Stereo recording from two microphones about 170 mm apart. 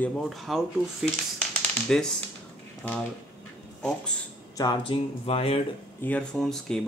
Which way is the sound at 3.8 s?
5° left (ahead or behind).